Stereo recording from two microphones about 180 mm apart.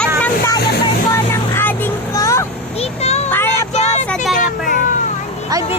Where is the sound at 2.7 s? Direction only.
35° left (ahead or behind).